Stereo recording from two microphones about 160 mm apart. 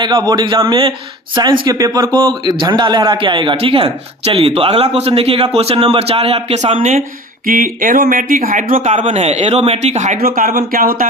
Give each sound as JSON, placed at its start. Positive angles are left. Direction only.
{"t": 0.0, "sound": "speech", "side_deg": -25}
{"t": 7.4, "sound": "speech", "side_deg": -60}
{"t": 9.0, "sound": "a man's voice", "side_deg": -40}
{"t": 10.2, "sound": "speech", "side_deg": -65}